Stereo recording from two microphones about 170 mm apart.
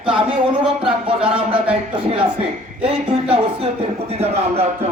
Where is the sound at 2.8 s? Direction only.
35° right (ahead or behind).